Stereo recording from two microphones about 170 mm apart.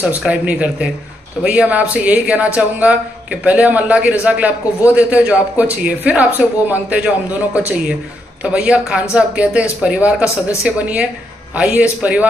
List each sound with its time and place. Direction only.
0.0 s speech: 10° right (ahead or behind)
10.2 s speech: 15° left (ahead or behind)
10.6 s speech: 10° right (ahead or behind)